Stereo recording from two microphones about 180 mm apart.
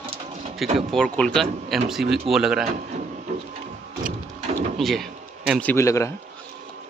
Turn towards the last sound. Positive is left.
turn(degrees=15)  # may be behind; listen again after turning